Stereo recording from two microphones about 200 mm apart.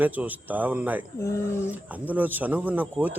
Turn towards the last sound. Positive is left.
turn(degrees=-10)  # may be behind; listen again after turning